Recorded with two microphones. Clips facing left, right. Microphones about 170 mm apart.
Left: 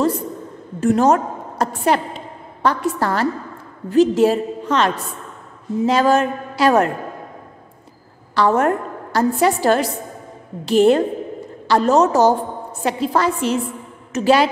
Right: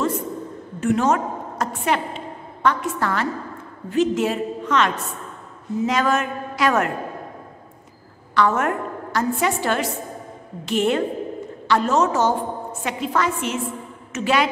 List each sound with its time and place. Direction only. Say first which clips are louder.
0.7 s a woman's voice: left 4 dB; 35° left (ahead or behind)
8.4 s a woman's voice: left 4 dB; 35° left (ahead or behind)